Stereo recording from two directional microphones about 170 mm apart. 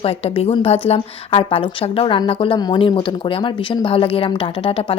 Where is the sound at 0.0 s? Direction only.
35° left (ahead or behind).